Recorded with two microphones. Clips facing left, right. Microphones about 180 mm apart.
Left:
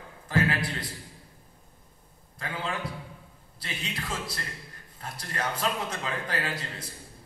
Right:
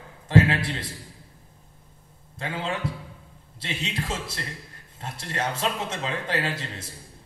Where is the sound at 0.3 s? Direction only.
25° right (ahead or behind).